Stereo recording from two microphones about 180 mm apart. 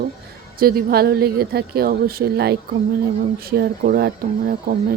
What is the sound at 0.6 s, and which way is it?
Speech, 55° right (ahead or behind).